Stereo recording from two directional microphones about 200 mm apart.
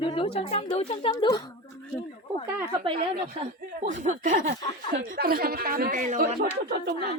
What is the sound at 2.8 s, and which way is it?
Speech, 30° right (ahead or behind).